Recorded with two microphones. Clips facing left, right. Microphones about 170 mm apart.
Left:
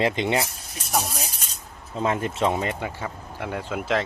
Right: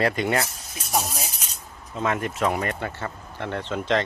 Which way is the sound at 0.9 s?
5° right (ahead or behind).